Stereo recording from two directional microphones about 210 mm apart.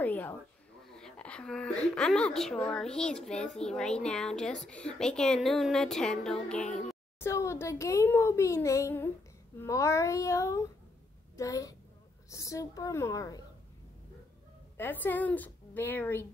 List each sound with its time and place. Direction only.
0.0 s a child's voice: 10° left (ahead or behind)
14.8 s a child's voice: 10° left (ahead or behind)